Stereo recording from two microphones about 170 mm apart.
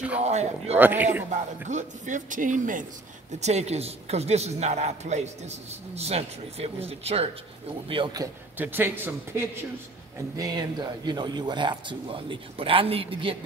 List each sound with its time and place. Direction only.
0.2 s speech: 40° right (ahead or behind)
0.7 s a man's voice: 10° right (ahead or behind)
1.7 s speech: 45° right (ahead or behind)
7.9 s speech: 25° right (ahead or behind)
8.5 s a man's voice: 10° right (ahead or behind); by 13.4 s 30° right (ahead or behind)